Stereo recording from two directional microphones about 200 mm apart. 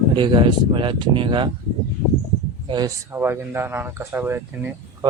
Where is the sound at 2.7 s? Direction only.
20° right (ahead or behind).